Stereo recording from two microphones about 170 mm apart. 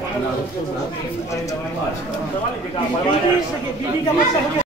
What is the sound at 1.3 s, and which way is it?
Speech, 20° left (ahead or behind).